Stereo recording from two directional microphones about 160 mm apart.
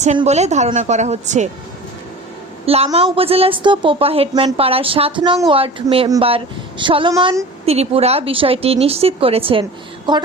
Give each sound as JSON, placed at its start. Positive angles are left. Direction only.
{"t": 0.3, "sound": "speech", "side_deg": -45}
{"t": 2.6, "sound": "speech", "side_deg": -40}